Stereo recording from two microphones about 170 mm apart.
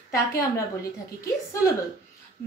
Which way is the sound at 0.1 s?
20° left (ahead or behind).